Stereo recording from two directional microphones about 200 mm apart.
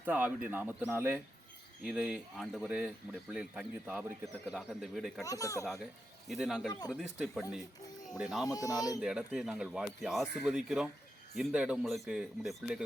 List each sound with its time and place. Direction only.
0.0 s speech: 10° right (ahead or behind)
5.2 s speech: 15° left (ahead or behind)
5.8 s speech: centre (ahead or behind)
6.7 s speech: 20° left (ahead or behind)
6.9 s speech: centre (ahead or behind)
8.4 s speech: 15° left (ahead or behind)
9.0 s speech: 5° right (ahead or behind)